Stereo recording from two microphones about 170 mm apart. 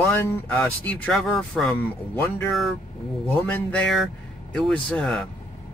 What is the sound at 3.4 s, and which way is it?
Speech, 5° left (ahead or behind).